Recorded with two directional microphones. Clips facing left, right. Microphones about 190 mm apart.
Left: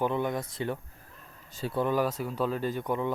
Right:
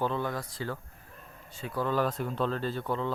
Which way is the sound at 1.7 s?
15° left (ahead or behind).